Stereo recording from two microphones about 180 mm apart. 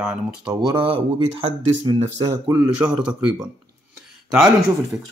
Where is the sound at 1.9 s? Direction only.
25° right (ahead or behind).